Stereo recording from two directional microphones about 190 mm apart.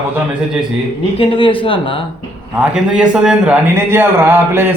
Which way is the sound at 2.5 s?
5° right (ahead or behind).